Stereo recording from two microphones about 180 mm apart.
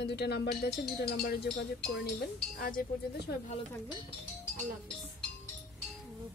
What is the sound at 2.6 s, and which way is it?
Speech, 55° left (ahead or behind).